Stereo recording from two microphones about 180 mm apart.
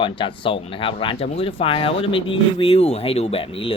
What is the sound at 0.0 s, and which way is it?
Speech, 30° left (ahead or behind).